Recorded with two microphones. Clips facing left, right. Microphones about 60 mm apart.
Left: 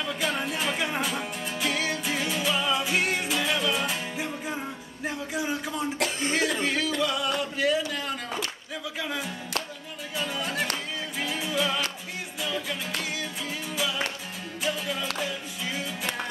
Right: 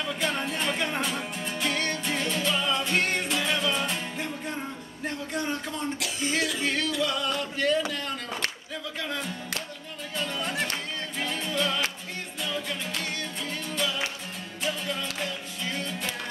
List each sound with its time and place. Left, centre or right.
0.0 s music: centre
5.9 s cough: left
6.6 s yodeling: centre
7.0 s a sound: centre
9.0 s music: centre